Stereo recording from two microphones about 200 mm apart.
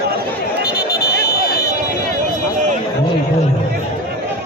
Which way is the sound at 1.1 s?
50° left (ahead or behind).